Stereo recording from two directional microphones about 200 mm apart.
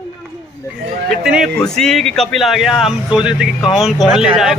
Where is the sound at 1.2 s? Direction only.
Centre (ahead or behind).